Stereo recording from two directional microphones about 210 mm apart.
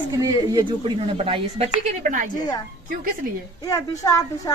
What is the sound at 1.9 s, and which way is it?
Speech, 40° right (ahead or behind).